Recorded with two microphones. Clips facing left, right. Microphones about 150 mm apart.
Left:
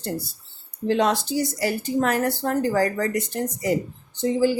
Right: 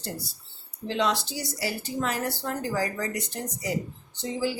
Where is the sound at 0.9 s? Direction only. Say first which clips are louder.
Left 6 dB; 50° left (ahead or behind).